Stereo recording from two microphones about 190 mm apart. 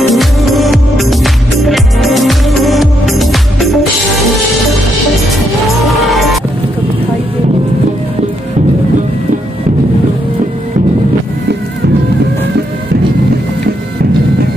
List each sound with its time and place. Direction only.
0.1 s music: centre (ahead or behind)
6.0 s music: centre (ahead or behind)